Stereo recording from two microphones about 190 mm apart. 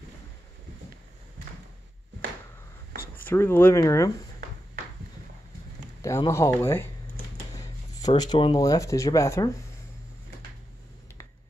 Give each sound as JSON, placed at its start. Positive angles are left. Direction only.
{"t": 3.2, "sound": "speech", "side_deg": 10}
{"t": 6.0, "sound": "speech", "side_deg": 15}